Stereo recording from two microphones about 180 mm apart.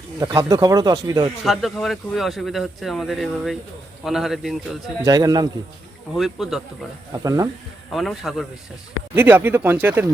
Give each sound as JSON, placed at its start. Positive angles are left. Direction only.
{"t": 0.2, "sound": "speech", "side_deg": -20}
{"t": 1.5, "sound": "speech", "side_deg": 0}
{"t": 5.0, "sound": "speech", "side_deg": -20}
{"t": 6.1, "sound": "speech", "side_deg": 0}
{"t": 7.1, "sound": "speech", "side_deg": -20}
{"t": 7.9, "sound": "speech", "side_deg": 0}
{"t": 9.1, "sound": "speech", "side_deg": -10}